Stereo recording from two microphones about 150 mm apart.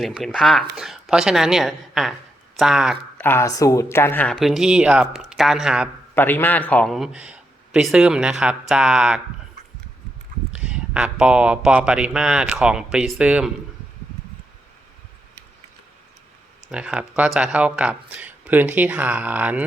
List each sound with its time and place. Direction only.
0.0 s speech: centre (ahead or behind)
3.2 s speech: 15° left (ahead or behind)
4.4 s speech: centre (ahead or behind)
6.1 s speech: 15° left (ahead or behind); by 9.2 s 5° right (ahead or behind)
10.6 s speech: 5° right (ahead or behind)
16.7 s speech: 5° right (ahead or behind)